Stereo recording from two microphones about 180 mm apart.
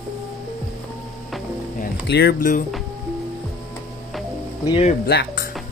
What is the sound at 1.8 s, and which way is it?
Speech, 60° left (ahead or behind).